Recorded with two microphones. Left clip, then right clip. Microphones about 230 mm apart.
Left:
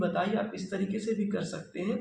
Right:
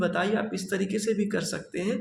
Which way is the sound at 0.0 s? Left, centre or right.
Right.